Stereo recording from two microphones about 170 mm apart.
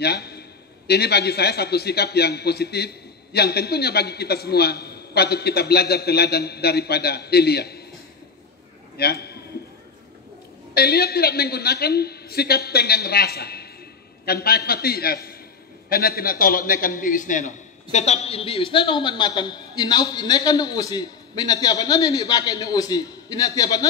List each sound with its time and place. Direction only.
0.0 s a man's voice: 70° left (ahead or behind)
8.9 s a sound: 70° left (ahead or behind)
10.7 s a man's voice: 65° left (ahead or behind); by 23.9 s 20° left (ahead or behind)